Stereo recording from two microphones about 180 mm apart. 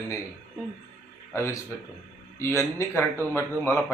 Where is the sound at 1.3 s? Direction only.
15° left (ahead or behind).